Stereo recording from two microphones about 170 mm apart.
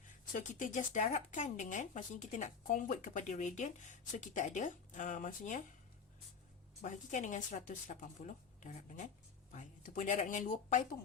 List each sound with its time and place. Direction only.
0.3 s speech: 50° left (ahead or behind)
6.8 s speech: 45° left (ahead or behind)